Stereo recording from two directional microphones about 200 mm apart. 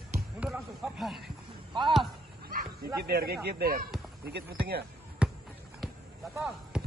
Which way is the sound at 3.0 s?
55° right (ahead or behind).